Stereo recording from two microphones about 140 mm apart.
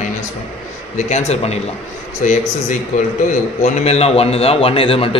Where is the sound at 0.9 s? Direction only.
55° left (ahead or behind).